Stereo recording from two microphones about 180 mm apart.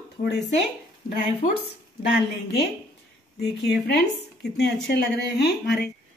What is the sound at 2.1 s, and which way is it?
A woman's voice, 70° left (ahead or behind).